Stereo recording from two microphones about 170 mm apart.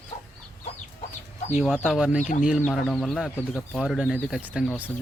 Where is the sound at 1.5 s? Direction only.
Centre (ahead or behind).